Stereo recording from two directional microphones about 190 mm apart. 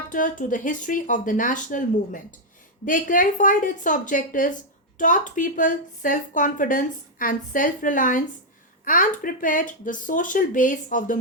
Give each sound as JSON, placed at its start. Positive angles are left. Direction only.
{"t": 0.1, "sound": "a woman's voice", "side_deg": 45}